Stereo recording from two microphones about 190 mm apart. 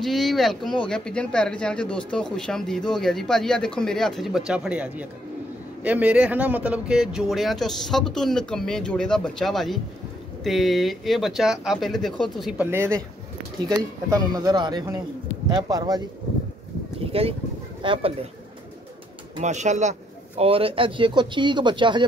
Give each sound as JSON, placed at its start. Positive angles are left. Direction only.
{"t": 0.0, "sound": "speech", "side_deg": 0}
{"t": 14.1, "sound": "a man's voice", "side_deg": -20}
{"t": 17.0, "sound": "a man's voice", "side_deg": -30}
{"t": 19.4, "sound": "a man's voice", "side_deg": -40}